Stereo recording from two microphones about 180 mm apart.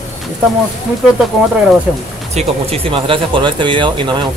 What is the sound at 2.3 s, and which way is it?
Speech, 35° right (ahead or behind).